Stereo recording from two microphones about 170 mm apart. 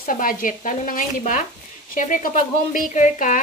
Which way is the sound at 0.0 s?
55° left (ahead or behind).